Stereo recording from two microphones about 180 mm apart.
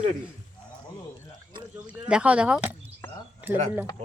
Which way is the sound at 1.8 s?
5° right (ahead or behind).